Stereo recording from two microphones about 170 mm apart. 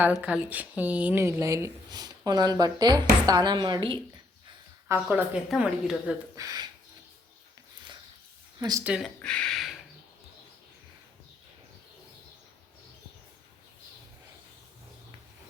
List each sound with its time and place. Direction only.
0.2 s speech: 10° right (ahead or behind); by 4.0 s 30° right (ahead or behind)
4.9 s speech: 10° right (ahead or behind)
6.3 s speech: 20° right (ahead or behind)
8.5 s speech: 20° right (ahead or behind)
8.8 s speech: 5° right (ahead or behind)